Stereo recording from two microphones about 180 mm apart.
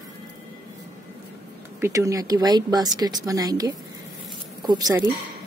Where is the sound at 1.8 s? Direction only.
15° right (ahead or behind).